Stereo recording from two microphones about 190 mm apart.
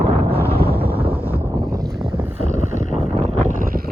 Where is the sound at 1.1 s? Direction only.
10° right (ahead or behind).